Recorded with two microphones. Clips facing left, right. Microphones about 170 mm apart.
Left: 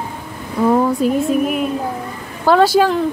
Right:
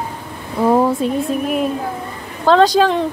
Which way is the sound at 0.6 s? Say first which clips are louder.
Even; 5° right (ahead or behind).